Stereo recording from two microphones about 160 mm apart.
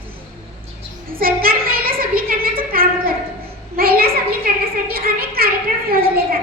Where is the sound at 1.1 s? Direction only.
65° right (ahead or behind).